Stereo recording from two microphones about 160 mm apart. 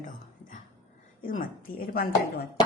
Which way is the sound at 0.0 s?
55° left (ahead or behind).